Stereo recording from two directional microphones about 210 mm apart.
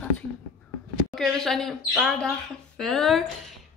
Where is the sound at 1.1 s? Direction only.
Centre (ahead or behind).